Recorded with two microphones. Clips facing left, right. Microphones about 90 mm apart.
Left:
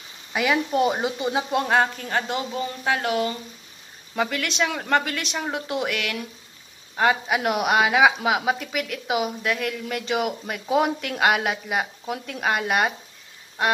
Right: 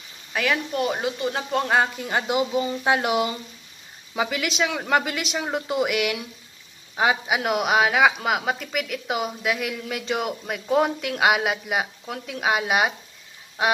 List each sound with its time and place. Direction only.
0.3 s speech: 15° left (ahead or behind)
1.5 s speech: centre (ahead or behind)
13.6 s quack: 5° right (ahead or behind)